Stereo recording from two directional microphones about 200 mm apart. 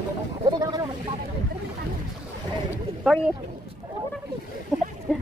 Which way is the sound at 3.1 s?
Centre (ahead or behind).